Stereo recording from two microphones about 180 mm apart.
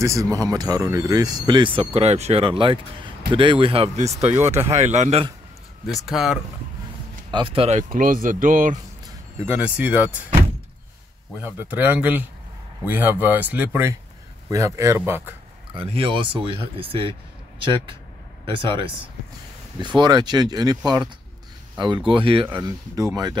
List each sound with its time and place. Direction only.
0.0 s speech: 20° right (ahead or behind); by 4.1 s 35° right (ahead or behind)
4.3 s speech: 15° right (ahead or behind)
4.6 s speech: 40° right (ahead or behind)
5.9 s speech: centre (ahead or behind)
7.2 s speech: 25° right (ahead or behind)
7.9 s speech: 50° right (ahead or behind)
9.4 s speech: 10° right (ahead or behind)
11.3 s speech: 10° right (ahead or behind)
15.7 s speech: 30° right (ahead or behind)
20.0 s speech: 25° right (ahead or behind)